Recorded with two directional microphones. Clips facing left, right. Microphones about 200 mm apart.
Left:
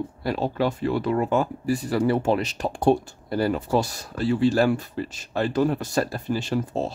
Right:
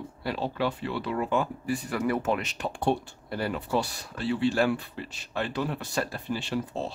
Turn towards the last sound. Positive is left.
turn(degrees=45)  # may be behind; listen again after turning